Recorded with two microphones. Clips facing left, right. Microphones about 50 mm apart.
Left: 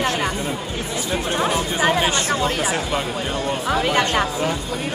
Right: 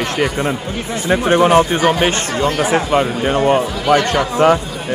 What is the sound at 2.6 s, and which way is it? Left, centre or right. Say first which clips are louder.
Speech: right 8 dB; right.